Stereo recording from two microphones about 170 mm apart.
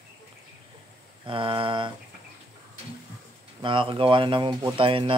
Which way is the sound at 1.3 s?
30° right (ahead or behind).